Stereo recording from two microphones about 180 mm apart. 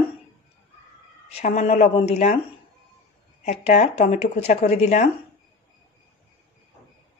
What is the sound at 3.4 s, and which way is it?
A woman's voice, 40° left (ahead or behind).